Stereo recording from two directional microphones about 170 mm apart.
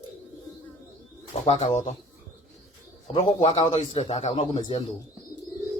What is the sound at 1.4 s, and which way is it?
Speech, 40° left (ahead or behind).